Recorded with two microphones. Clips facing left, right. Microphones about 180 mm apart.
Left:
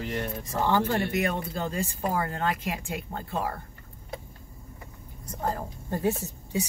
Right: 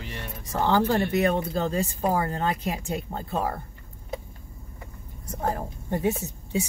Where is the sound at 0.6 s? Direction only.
30° right (ahead or behind).